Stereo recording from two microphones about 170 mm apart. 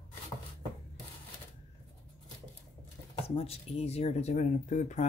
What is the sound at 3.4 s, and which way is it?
Speech, 35° left (ahead or behind).